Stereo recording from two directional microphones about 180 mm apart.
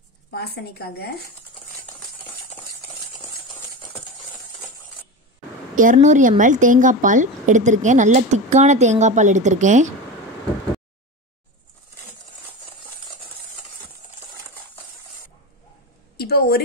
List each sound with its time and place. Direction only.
0.3 s speech: 60° left (ahead or behind)
5.8 s a woman's voice: 45° right (ahead or behind)
16.2 s a sound: 60° left (ahead or behind)